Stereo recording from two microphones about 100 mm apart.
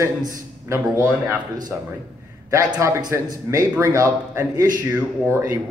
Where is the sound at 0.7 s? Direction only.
25° right (ahead or behind).